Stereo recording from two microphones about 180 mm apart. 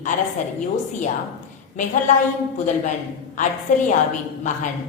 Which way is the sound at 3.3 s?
45° left (ahead or behind).